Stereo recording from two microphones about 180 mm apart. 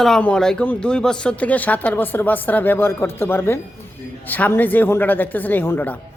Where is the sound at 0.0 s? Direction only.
5° left (ahead or behind).